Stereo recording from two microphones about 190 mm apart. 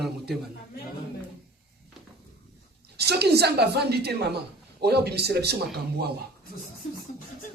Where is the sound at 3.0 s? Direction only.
60° right (ahead or behind).